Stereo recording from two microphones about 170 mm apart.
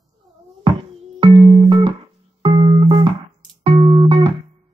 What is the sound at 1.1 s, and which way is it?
Music, 30° right (ahead or behind).